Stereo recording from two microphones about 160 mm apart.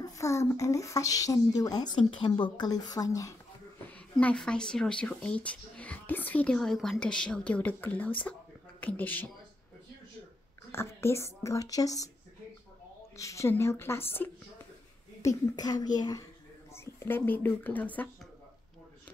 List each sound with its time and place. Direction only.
0.0 s speech: 20° left (ahead or behind)
3.9 s speech: 10° left (ahead or behind)
10.7 s speech: 15° left (ahead or behind)
13.1 s speech: 20° left (ahead or behind)
15.2 s speech: 25° left (ahead or behind)